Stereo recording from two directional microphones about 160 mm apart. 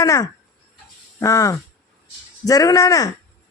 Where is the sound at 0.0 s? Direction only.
20° left (ahead or behind).